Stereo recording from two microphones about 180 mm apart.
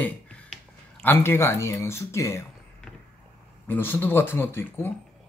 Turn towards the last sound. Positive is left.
turn(degrees=10)  # may be behind; listen again after turning